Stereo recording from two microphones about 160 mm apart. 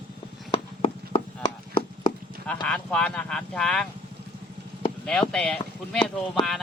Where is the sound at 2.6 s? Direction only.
5° left (ahead or behind).